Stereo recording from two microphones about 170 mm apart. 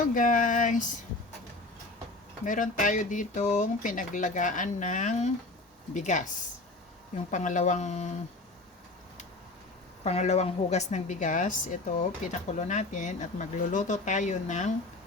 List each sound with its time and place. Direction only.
0.1 s speech: 50° left (ahead or behind)
2.4 s speech: 50° left (ahead or behind)
10.0 s speech: 40° left (ahead or behind)